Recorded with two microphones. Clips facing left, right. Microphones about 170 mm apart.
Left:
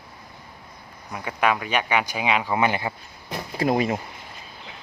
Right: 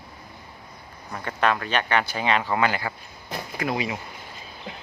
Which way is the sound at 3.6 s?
45° left (ahead or behind).